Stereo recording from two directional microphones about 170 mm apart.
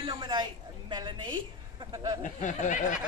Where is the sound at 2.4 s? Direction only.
45° left (ahead or behind).